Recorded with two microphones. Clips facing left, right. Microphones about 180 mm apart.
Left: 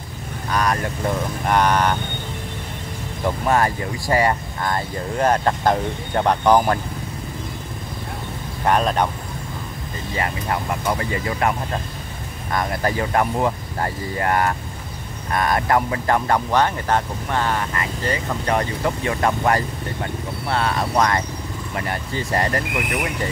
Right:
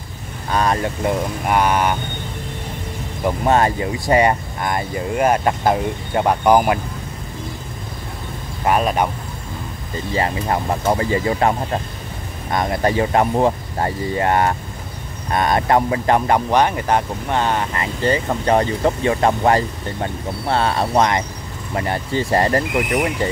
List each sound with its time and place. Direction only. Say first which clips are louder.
0.5 s speech: right 3 dB; 25° right (ahead or behind)
1.4 s speech: even; 10° right (ahead or behind)
3.4 s speech: right 4 dB; 25° right (ahead or behind)
8.6 s speech: right 1 dB; 10° right (ahead or behind)
10.1 s speech: right 4 dB; 30° right (ahead or behind)
12.5 s speech: right 4 dB; 20° right (ahead or behind)